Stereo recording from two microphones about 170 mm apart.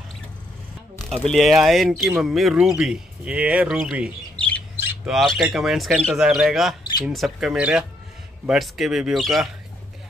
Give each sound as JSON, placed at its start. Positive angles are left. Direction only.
{"t": 0.9, "sound": "speech", "side_deg": 0}
{"t": 4.4, "sound": "squawk", "side_deg": 10}
{"t": 4.7, "sound": "squawk", "side_deg": -10}
{"t": 5.1, "sound": "speech", "side_deg": 0}